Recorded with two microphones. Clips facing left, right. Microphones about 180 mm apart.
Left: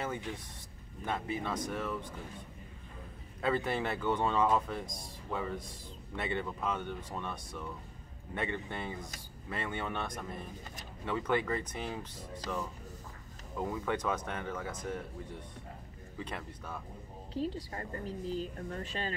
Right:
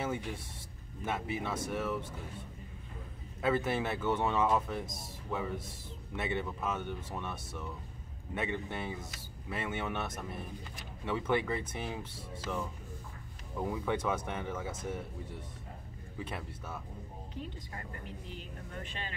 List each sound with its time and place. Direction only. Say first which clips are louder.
0.0 s speech: right 2 dB; 10° right (ahead or behind)
3.3 s speech: right 1 dB; 5° right (ahead or behind)
13.8 s speech: right 1 dB; 10° right (ahead or behind)
16.2 s speech: even; 10° right (ahead or behind)
17.3 s speech: left 10 dB; 35° left (ahead or behind)